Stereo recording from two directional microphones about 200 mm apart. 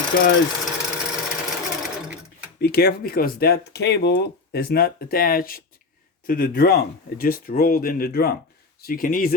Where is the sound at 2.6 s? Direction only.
55° left (ahead or behind).